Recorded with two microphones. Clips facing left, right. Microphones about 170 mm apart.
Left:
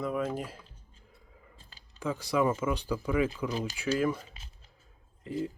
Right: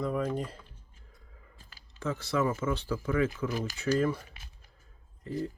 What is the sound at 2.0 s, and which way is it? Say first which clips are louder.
Speech: left 1 dB; 10° left (ahead or behind).